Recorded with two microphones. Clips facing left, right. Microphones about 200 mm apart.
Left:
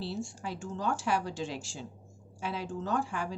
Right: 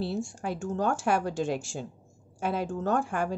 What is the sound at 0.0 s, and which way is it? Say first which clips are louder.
A woman's voice: right 5 dB; 50° right (ahead or behind).